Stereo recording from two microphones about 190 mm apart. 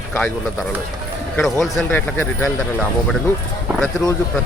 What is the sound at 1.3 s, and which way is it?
Speech, 5° left (ahead or behind).